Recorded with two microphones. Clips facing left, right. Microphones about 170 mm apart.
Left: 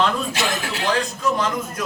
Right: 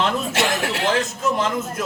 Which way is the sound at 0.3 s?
65° right (ahead or behind).